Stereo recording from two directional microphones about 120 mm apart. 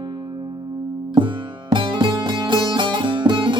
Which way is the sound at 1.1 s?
40° right (ahead or behind).